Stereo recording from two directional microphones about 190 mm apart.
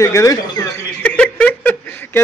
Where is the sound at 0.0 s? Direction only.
15° left (ahead or behind).